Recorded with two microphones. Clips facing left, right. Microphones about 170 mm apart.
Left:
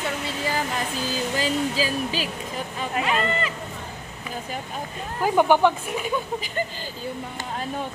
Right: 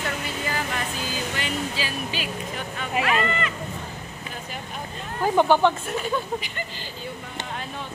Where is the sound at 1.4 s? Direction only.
40° left (ahead or behind).